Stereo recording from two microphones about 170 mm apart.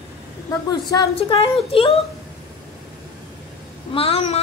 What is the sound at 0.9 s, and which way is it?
A woman's voice, 25° left (ahead or behind).